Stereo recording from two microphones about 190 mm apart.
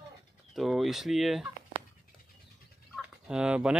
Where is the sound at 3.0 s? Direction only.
5° right (ahead or behind).